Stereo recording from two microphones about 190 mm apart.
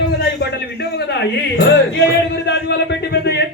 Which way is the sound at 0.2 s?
60° left (ahead or behind).